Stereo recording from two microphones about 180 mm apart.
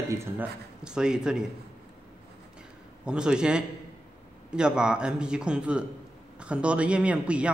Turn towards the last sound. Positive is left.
turn(degrees=-5)  # may be behind; listen again after turning